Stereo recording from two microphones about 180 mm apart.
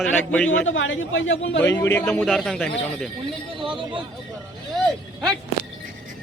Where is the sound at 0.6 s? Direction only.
90° left.